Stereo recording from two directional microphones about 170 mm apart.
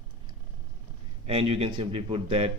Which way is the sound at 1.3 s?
35° right (ahead or behind).